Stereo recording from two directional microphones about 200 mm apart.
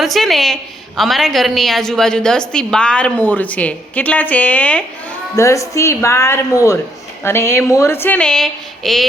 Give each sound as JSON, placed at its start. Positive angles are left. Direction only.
{"t": 0.0, "sound": "a woman's voice", "side_deg": 0}